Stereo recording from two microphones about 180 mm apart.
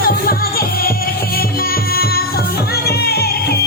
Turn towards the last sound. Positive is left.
turn(degrees=60)  # may be behind; listen again after turning